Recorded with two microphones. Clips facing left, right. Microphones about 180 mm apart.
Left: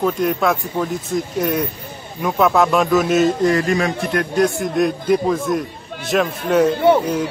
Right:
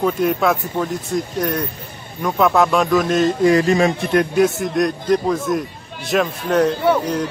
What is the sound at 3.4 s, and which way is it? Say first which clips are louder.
Speech: right 3 dB; 20° right (ahead or behind).